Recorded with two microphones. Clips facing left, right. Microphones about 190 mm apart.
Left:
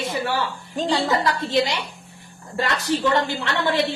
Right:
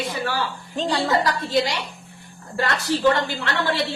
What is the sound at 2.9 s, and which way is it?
Speech, 20° left (ahead or behind).